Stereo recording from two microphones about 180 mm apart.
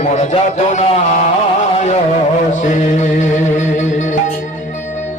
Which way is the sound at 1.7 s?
40° left (ahead or behind).